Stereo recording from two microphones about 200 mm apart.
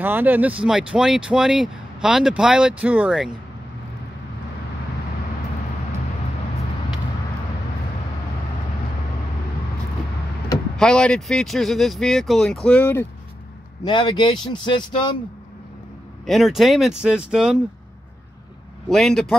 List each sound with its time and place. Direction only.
0.0 s speech: 10° right (ahead or behind)
10.8 s speech: 5° left (ahead or behind)
13.8 s speech: 25° left (ahead or behind)
16.3 s speech: centre (ahead or behind)
18.9 s speech: centre (ahead or behind)